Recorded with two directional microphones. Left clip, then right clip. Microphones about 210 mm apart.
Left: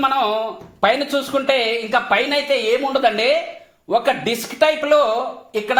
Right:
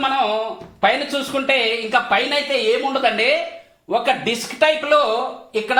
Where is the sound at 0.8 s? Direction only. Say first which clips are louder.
Left 1 dB; 40° left (ahead or behind).